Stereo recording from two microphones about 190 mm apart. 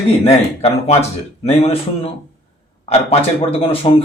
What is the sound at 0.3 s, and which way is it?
A man's voice, 30° left (ahead or behind).